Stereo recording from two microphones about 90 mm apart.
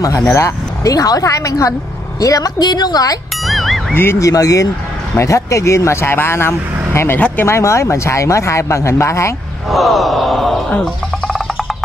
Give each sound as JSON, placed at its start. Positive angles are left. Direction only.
{"t": 0.3, "sound": "a woman's voice", "side_deg": 40}
{"t": 3.4, "sound": "music", "side_deg": 0}
{"t": 3.9, "sound": "speech", "side_deg": 25}
{"t": 9.7, "sound": "a sound", "side_deg": 0}